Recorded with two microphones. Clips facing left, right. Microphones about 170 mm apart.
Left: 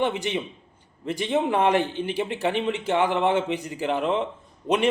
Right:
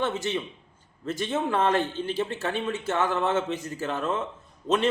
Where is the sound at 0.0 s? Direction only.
15° left (ahead or behind).